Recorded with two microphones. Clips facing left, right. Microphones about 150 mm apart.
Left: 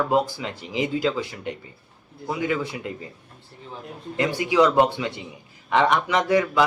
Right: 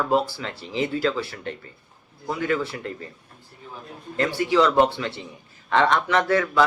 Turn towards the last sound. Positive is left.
turn(degrees=15)  # may be behind; listen again after turning